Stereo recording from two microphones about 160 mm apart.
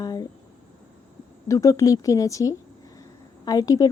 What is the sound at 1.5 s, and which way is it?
A woman's voice, 20° left (ahead or behind).